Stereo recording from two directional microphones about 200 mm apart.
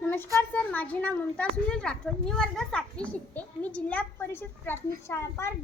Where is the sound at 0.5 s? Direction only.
5° left (ahead or behind).